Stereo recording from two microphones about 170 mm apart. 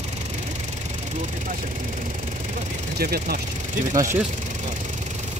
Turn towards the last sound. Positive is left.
turn(degrees=-20)  # may be behind; listen again after turning